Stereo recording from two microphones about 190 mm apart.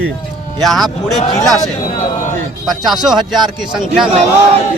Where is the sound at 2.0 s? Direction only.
40° left (ahead or behind).